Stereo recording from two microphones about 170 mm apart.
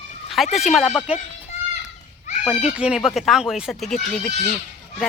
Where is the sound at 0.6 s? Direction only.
Centre (ahead or behind).